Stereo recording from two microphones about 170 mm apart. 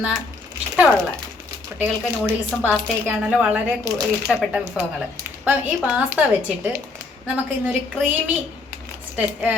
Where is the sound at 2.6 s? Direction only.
5° right (ahead or behind).